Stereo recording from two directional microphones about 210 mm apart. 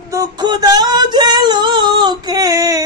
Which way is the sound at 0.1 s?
20° right (ahead or behind).